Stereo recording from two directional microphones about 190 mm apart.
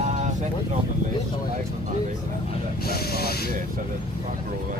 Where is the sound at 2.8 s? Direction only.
55° left (ahead or behind).